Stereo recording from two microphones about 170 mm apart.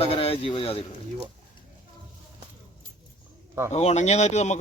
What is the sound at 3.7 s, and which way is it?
Speech, 40° left (ahead or behind).